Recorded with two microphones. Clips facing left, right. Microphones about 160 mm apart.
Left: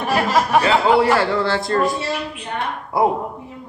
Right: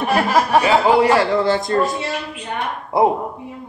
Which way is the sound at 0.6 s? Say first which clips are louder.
Right 1 dB; 15° right (ahead or behind).